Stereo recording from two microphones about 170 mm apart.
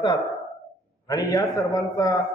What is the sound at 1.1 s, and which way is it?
A man's voice, 20° left (ahead or behind).